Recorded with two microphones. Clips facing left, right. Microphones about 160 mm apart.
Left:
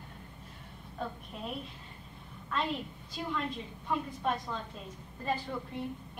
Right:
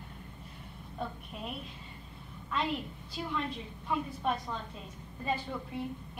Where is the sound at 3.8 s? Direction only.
5° right (ahead or behind).